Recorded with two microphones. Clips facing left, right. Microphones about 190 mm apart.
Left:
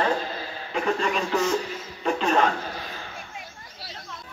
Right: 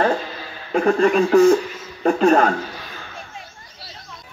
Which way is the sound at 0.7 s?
50° right (ahead or behind).